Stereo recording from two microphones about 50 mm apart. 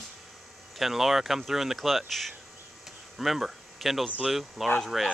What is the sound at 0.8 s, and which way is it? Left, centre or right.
Speech, centre.